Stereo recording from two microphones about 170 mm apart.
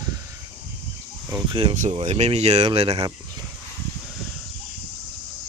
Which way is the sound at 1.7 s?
45° right (ahead or behind).